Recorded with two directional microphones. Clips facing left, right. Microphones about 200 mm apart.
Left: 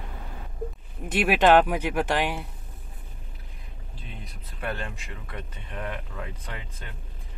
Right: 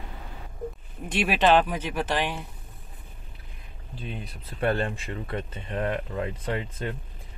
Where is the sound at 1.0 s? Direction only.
10° left (ahead or behind).